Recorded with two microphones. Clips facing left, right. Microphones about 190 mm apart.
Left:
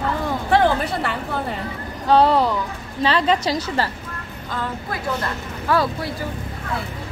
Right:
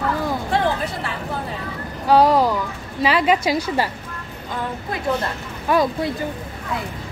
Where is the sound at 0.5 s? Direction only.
70° left (ahead or behind).